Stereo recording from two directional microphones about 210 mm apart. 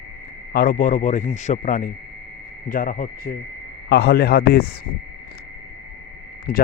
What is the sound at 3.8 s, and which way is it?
Speech, 55° left (ahead or behind).